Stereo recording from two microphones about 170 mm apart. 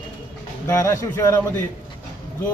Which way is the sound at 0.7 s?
15° left (ahead or behind).